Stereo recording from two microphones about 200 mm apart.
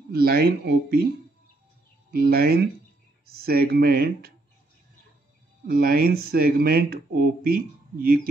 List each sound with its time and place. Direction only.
0.1 s speech: 50° right (ahead or behind)
2.0 s speech: 50° right (ahead or behind)
5.7 s speech: 50° right (ahead or behind)